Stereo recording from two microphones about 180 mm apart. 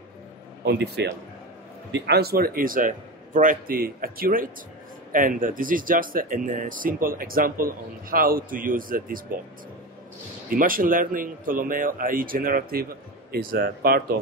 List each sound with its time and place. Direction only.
0.7 s a man's voice: 70° right (ahead or behind); by 9.4 s 50° right (ahead or behind)
10.5 s a man's voice: 50° right (ahead or behind)